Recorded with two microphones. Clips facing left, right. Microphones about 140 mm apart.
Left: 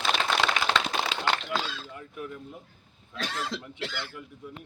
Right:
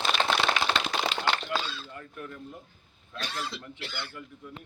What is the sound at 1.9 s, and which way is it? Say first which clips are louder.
Speech: left 2 dB; 10° left (ahead or behind).